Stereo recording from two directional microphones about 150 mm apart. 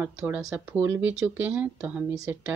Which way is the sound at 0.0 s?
10° right (ahead or behind).